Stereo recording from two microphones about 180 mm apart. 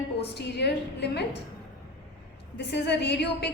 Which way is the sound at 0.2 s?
65° left (ahead or behind).